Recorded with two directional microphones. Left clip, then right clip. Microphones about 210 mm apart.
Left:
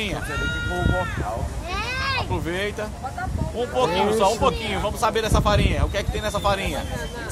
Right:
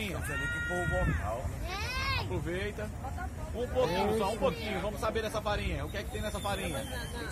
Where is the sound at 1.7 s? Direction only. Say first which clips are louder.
Left 9 dB; 30° right (ahead or behind).